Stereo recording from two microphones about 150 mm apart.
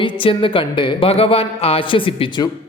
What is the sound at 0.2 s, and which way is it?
Speech, 35° left (ahead or behind).